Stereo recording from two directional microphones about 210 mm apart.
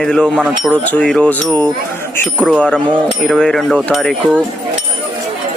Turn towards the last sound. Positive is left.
turn(degrees=0)  # may be behind; listen again after turning